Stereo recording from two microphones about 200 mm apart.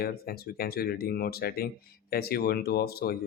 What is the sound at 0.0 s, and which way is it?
Speech, 50° left (ahead or behind).